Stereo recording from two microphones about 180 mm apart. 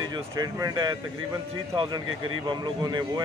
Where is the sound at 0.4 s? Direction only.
20° right (ahead or behind).